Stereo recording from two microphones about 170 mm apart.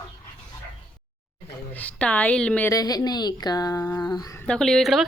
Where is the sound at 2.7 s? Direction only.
20° left (ahead or behind).